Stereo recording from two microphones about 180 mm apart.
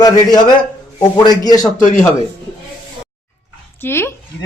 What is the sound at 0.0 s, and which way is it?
A man's voice, 20° left (ahead or behind).